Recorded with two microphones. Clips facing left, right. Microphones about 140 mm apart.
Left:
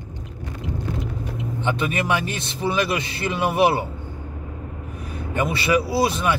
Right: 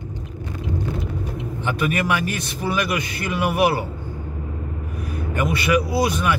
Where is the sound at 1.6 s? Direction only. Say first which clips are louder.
Right 1 dB; 25° left (ahead or behind).